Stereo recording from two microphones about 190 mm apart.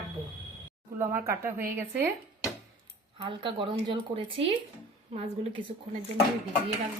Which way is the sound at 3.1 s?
25° right (ahead or behind).